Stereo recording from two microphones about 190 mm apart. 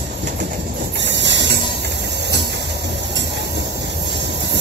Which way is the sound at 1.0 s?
65° right (ahead or behind).